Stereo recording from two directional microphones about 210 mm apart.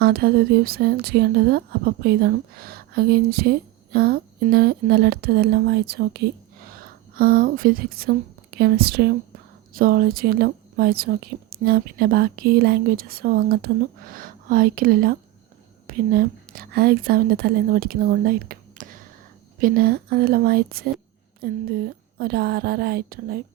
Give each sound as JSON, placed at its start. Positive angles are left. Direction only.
{"t": 0.0, "sound": "speech", "side_deg": -45}